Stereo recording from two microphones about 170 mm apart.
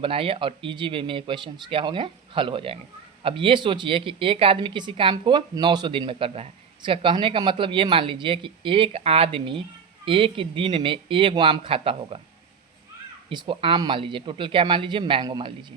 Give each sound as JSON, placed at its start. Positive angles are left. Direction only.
{"t": 0.0, "sound": "a woman's voice", "side_deg": -35}
{"t": 13.3, "sound": "speech", "side_deg": -30}